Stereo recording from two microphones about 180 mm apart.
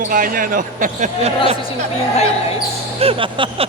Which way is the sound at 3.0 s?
30° right (ahead or behind).